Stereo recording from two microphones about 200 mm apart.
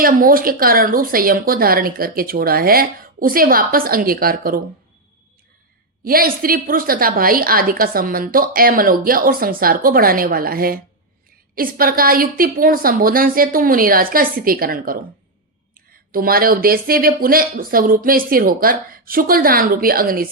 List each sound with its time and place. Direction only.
0.0 s a woman's voice: 45° right (ahead or behind)
6.1 s a woman's voice: 45° right (ahead or behind)
16.1 s a woman's voice: 45° right (ahead or behind)